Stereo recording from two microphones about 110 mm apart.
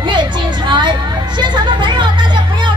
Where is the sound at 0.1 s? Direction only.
45° right (ahead or behind).